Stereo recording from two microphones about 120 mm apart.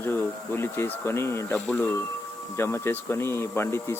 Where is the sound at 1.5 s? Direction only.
10° left (ahead or behind).